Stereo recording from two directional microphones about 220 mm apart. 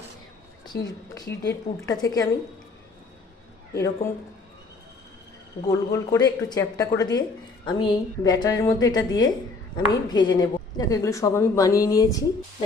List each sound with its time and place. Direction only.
0.6 s a woman's voice: 20° left (ahead or behind)
3.8 s a woman's voice: 15° left (ahead or behind)
5.9 s a woman's voice: 15° left (ahead or behind)